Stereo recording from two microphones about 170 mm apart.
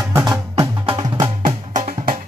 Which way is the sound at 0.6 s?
30° right (ahead or behind).